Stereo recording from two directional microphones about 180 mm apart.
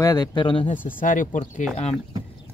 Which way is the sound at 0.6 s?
45° left (ahead or behind).